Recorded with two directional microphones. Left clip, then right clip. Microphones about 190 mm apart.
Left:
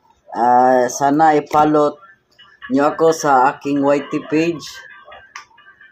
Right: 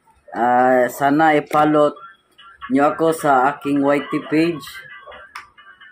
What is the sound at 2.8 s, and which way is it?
Speech, 25° right (ahead or behind).